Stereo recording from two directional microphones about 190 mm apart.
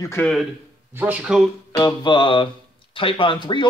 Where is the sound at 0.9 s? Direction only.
10° right (ahead or behind).